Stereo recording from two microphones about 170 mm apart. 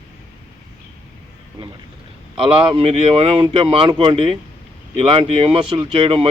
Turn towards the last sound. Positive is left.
turn(degrees=-35)  # may be behind; listen again after turning